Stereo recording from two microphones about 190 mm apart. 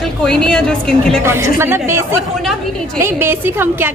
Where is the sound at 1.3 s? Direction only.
15° right (ahead or behind).